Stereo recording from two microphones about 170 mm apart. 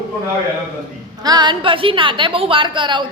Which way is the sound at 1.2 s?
25° right (ahead or behind).